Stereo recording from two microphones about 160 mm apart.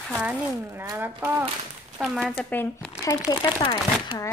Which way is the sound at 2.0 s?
Centre (ahead or behind).